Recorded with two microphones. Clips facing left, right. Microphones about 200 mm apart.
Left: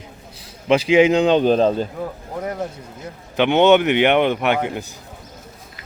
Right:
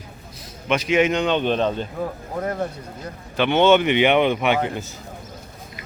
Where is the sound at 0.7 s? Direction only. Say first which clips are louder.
Left 5 dB; 30° left (ahead or behind).